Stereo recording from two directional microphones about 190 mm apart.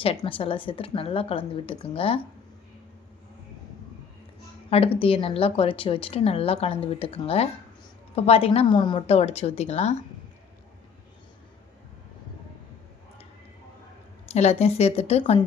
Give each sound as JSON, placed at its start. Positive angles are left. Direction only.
{"t": 0.0, "sound": "speech", "side_deg": 30}
{"t": 4.7, "sound": "a woman's voice", "side_deg": 30}
{"t": 14.3, "sound": "a woman's voice", "side_deg": 35}